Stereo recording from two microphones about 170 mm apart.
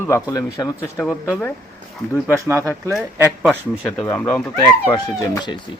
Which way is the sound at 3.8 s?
5° left (ahead or behind).